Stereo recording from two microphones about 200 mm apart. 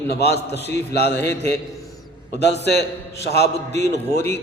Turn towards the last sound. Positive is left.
turn(degrees=55)  # may be behind; listen again after turning